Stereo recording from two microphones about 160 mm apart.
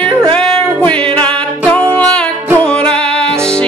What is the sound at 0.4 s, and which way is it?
Music, 5° left (ahead or behind).